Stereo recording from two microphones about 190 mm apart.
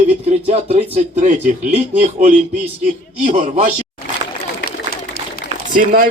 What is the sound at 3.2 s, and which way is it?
Speech, 35° right (ahead or behind).